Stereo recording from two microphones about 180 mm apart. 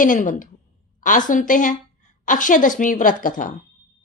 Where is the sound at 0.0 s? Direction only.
45° left (ahead or behind).